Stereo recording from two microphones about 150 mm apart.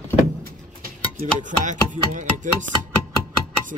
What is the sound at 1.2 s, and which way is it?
Chopping, 55° right (ahead or behind).